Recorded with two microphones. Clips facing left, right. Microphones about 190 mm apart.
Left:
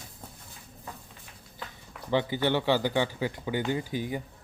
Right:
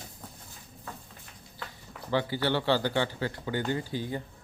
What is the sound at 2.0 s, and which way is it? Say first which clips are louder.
Speech: left 2 dB; 20° left (ahead or behind).